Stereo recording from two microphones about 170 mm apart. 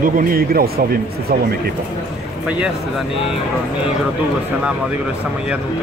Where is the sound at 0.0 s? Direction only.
55° right (ahead or behind).